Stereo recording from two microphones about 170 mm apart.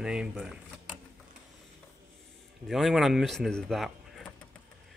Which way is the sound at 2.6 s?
Centre (ahead or behind).